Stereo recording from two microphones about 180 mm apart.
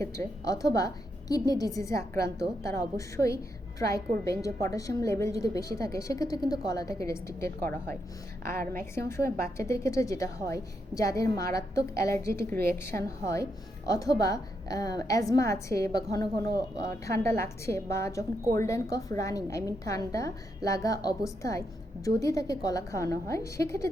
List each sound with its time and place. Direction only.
0.0 s a woman's voice: 15° left (ahead or behind)
9.0 s a woman's voice: 15° left (ahead or behind)